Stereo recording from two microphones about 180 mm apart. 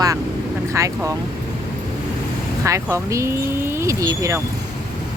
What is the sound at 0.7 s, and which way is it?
Speech, 15° right (ahead or behind).